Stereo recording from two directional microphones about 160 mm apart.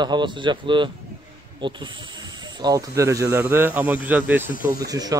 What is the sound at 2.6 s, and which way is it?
Speech, 20° right (ahead or behind).